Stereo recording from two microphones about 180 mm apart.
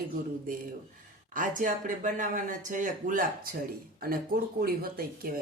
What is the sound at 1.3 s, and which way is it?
Speech, 45° right (ahead or behind).